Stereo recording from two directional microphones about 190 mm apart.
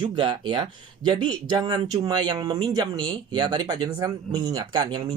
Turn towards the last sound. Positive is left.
turn(degrees=-20)  # may be behind; listen again after turning